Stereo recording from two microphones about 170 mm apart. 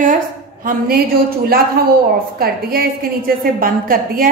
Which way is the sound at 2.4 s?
60° right (ahead or behind).